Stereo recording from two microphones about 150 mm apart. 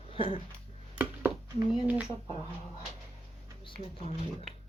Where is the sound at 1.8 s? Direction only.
10° right (ahead or behind).